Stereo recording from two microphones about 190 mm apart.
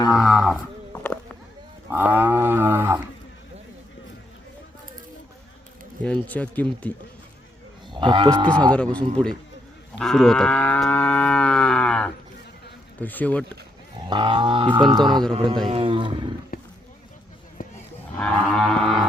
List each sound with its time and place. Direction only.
0.1 s roaring cats: centre (ahead or behind)
0.9 s run: 5° left (ahead or behind)
1.9 s cattle: 10° right (ahead or behind)
6.0 s speech: 5° left (ahead or behind)
7.9 s speech: 25° right (ahead or behind)
8.7 s livestock: 5° left (ahead or behind)
13.0 s speech: 10° left (ahead or behind)
14.1 s speech: 25° right (ahead or behind)
14.8 s livestock: centre (ahead or behind)
15.7 s roaring cats: 25° right (ahead or behind)
16.5 s roaring cats: 50° left (ahead or behind)
18.2 s cattle: 5° left (ahead or behind)